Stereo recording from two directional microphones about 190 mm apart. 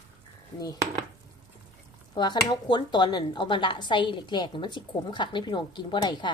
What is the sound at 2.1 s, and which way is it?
Speech, 20° left (ahead or behind).